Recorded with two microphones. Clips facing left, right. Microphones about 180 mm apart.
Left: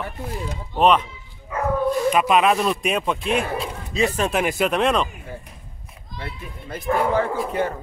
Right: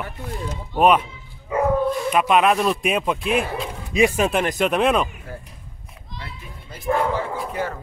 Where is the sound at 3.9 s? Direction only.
15° right (ahead or behind).